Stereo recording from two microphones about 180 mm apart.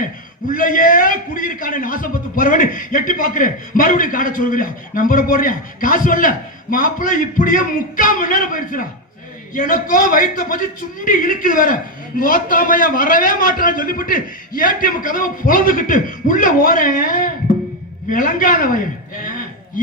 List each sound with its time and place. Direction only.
0.0 s a man's voice: 50° left (ahead or behind)